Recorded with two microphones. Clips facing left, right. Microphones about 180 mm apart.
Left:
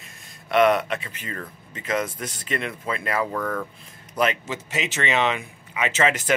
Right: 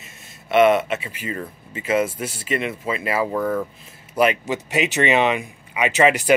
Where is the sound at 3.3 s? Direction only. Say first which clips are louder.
Right 5 dB; 15° right (ahead or behind).